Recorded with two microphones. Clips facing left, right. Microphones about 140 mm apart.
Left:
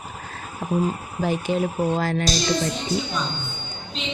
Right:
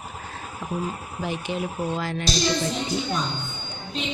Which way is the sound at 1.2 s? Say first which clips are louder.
Left 6 dB; 40° left (ahead or behind).